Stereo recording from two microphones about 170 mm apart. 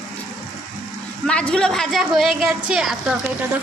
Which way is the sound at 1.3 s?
5° left (ahead or behind).